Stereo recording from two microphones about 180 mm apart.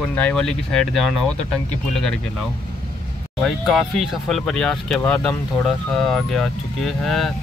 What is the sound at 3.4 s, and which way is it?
Speech, centre (ahead or behind).